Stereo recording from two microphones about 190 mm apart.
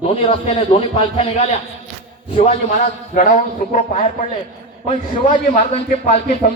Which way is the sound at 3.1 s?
45° left (ahead or behind).